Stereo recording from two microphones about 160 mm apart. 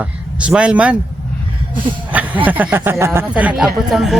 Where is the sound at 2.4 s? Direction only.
10° right (ahead or behind).